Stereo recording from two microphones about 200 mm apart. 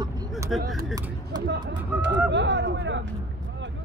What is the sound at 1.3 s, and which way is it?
Speech, 20° right (ahead or behind).